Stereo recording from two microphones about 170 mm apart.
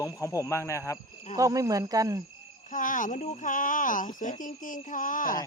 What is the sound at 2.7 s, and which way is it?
Cricket, 50° left (ahead or behind).